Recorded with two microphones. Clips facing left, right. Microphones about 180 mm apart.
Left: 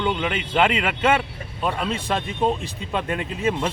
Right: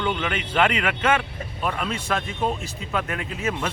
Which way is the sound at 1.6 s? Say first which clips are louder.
Left 2 dB; 30° left (ahead or behind).